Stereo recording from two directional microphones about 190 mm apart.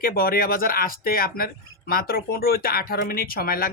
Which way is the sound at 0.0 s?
50° left (ahead or behind).